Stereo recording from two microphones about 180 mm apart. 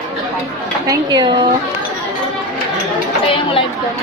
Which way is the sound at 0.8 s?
20° right (ahead or behind).